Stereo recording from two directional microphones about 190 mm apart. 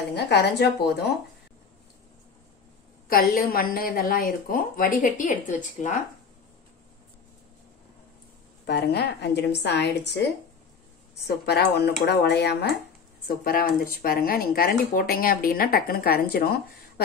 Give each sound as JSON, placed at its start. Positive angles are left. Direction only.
{"t": 0.1, "sound": "a woman's voice", "side_deg": 60}
{"t": 3.1, "sound": "a woman's voice", "side_deg": 50}
{"t": 8.6, "sound": "a woman's voice", "side_deg": 60}
{"t": 11.2, "sound": "a woman's voice", "side_deg": 55}